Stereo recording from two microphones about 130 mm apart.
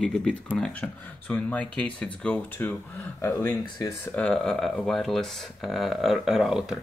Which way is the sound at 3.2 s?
30° left (ahead or behind).